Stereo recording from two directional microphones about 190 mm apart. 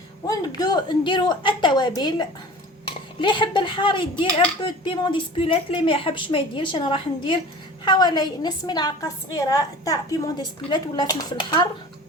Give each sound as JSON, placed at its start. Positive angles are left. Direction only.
{"t": 0.3, "sound": "a woman's voice", "side_deg": 20}